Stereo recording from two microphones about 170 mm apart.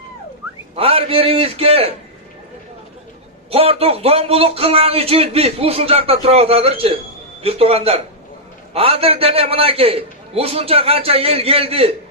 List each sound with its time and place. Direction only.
0.8 s a man's voice: 35° right (ahead or behind)
3.5 s a man's voice: 35° right (ahead or behind)